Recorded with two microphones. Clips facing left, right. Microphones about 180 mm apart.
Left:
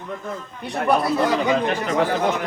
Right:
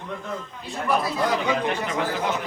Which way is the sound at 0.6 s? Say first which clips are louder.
Left 5 dB; 65° left (ahead or behind).